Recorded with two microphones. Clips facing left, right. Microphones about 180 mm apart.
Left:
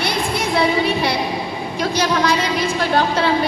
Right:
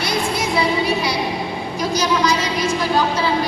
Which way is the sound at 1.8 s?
60° left (ahead or behind).